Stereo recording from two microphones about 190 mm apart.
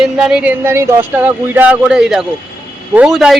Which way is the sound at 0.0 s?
5° right (ahead or behind).